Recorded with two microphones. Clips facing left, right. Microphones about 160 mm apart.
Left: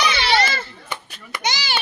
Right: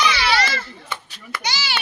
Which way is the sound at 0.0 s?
25° left (ahead or behind).